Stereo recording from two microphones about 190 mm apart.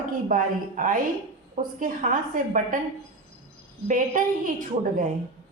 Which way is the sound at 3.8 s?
45° right (ahead or behind).